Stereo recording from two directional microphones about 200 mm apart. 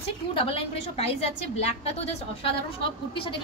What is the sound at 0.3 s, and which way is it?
Speech, 25° left (ahead or behind).